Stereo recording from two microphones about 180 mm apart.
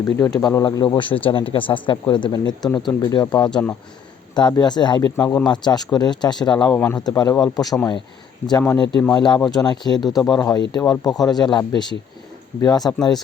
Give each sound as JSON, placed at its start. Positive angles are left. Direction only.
{"t": 0.0, "sound": "speech", "side_deg": 20}
{"t": 3.5, "sound": "speech", "side_deg": 10}
{"t": 4.4, "sound": "speech", "side_deg": 25}
{"t": 9.0, "sound": "speech", "side_deg": 20}
{"t": 10.0, "sound": "speech", "side_deg": 0}
{"t": 10.2, "sound": "speech", "side_deg": 20}